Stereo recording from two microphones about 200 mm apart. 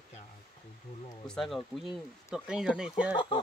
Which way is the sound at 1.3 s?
Centre (ahead or behind).